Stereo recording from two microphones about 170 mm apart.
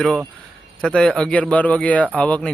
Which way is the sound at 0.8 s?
5° left (ahead or behind).